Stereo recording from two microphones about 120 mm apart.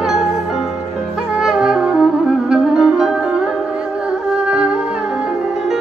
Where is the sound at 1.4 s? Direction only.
5° right (ahead or behind).